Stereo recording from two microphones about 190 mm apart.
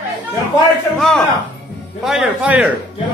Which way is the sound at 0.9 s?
Centre (ahead or behind).